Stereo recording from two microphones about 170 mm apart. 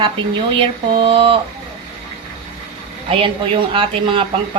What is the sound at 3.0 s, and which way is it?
Speech, 30° right (ahead or behind).